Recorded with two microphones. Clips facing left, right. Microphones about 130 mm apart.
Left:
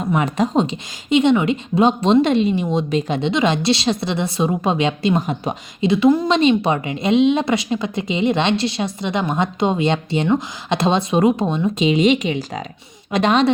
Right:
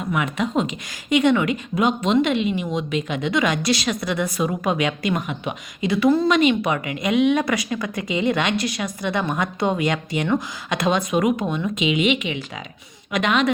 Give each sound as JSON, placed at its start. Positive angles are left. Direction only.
{"t": 0.0, "sound": "a woman's voice", "side_deg": 35}
{"t": 5.9, "sound": "a woman's voice", "side_deg": 20}